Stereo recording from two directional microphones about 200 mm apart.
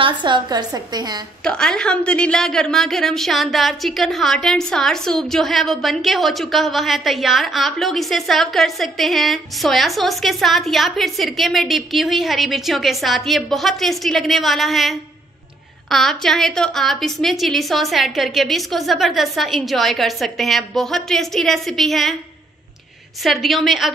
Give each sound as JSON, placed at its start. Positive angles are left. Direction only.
{"t": 0.0, "sound": "a woman's voice", "side_deg": -25}
{"t": 1.4, "sound": "a woman's voice", "side_deg": 5}
{"t": 23.2, "sound": "a woman's voice", "side_deg": 0}